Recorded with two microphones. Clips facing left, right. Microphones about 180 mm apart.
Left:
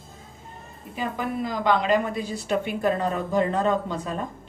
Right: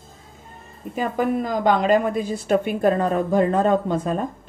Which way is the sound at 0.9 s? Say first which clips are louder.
Right 6 dB; 45° right (ahead or behind).